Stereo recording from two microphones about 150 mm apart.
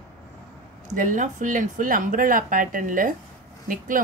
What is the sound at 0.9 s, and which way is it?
A woman's voice, 60° right (ahead or behind).